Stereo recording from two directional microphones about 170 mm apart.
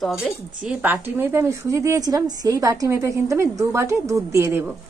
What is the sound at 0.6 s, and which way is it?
A woman's voice, 10° right (ahead or behind).